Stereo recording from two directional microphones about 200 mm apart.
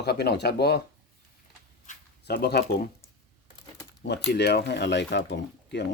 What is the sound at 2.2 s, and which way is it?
Speech, 55° left (ahead or behind).